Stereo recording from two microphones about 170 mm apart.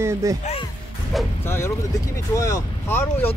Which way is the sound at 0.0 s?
20° right (ahead or behind).